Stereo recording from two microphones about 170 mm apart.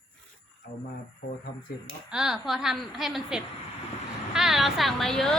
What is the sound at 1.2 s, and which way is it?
Speech, 60° left (ahead or behind).